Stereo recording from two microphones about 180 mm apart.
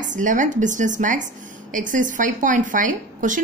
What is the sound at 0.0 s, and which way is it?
A woman's voice, 45° right (ahead or behind).